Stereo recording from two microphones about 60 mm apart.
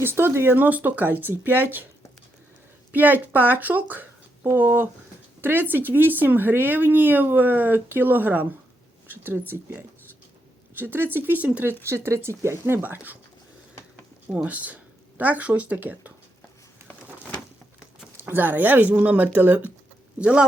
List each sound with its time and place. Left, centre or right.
0.0 s speech: right
0.5 s speech: right
2.9 s speech: right
11.6 s speech: right
12.8 s speech: right
14.3 s speech: right
18.2 s speech: right; by 20.5 s centre